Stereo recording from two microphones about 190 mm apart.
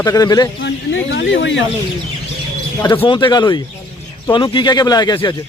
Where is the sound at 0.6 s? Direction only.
70° left (ahead or behind).